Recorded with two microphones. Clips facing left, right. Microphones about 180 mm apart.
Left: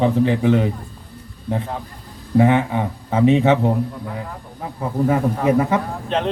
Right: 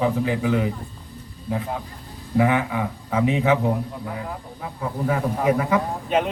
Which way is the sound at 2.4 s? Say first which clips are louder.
Left 4 dB; 25° left (ahead or behind).